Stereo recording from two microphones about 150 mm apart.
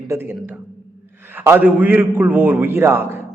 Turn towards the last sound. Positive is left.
turn(degrees=-15)  # may be behind; listen again after turning